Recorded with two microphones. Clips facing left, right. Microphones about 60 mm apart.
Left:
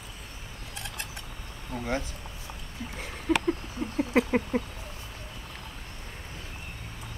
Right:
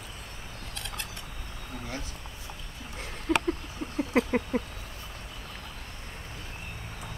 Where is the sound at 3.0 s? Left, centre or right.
Centre.